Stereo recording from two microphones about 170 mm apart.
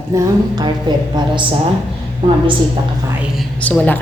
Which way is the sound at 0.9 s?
25° right (ahead or behind).